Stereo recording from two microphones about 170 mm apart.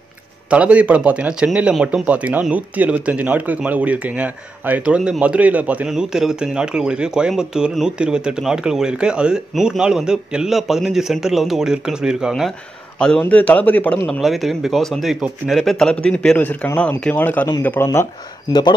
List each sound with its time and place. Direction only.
0.5 s a man's voice: 10° right (ahead or behind); by 18.0 s 15° left (ahead or behind)
18.5 s speech: 25° left (ahead or behind)